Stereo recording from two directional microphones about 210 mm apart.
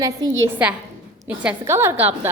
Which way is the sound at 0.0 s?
15° right (ahead or behind).